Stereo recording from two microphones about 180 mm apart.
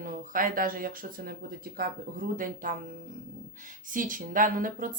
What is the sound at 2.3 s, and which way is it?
Speech, 50° right (ahead or behind).